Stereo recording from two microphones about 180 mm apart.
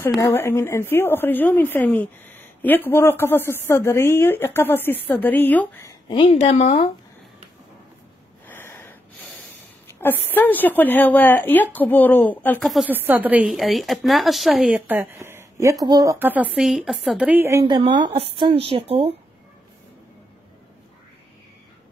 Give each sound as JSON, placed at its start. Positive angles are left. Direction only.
{"t": 0.2, "sound": "a woman's voice", "side_deg": 15}
{"t": 6.1, "sound": "a woman's voice", "side_deg": 35}
{"t": 8.5, "sound": "snort", "side_deg": 10}
{"t": 9.9, "sound": "a woman's voice", "side_deg": 10}
{"t": 12.9, "sound": "a woman's voice", "side_deg": -10}